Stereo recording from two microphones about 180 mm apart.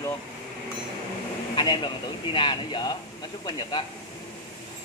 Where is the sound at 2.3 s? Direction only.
25° left (ahead or behind).